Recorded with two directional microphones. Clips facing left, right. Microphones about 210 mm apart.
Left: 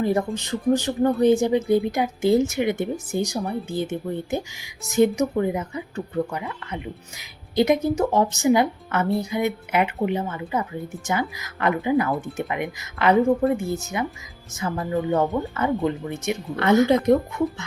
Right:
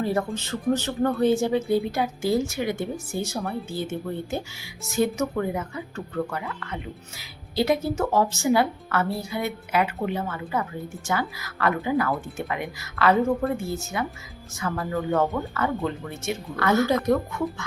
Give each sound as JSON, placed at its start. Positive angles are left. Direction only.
{"t": 0.0, "sound": "speech", "side_deg": 15}